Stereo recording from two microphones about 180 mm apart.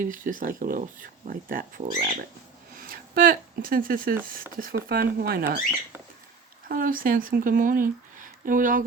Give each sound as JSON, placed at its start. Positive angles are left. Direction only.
{"t": 0.0, "sound": "speech", "side_deg": -50}
{"t": 6.7, "sound": "speech", "side_deg": -50}